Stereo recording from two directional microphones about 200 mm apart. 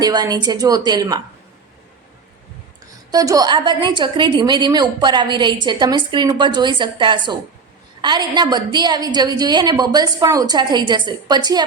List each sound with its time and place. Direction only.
0.0 s a woman's voice: 20° right (ahead or behind)
3.1 s a woman's voice: 20° right (ahead or behind)